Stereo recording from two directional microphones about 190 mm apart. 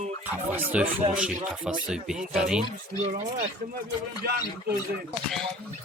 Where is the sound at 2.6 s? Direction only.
35° right (ahead or behind).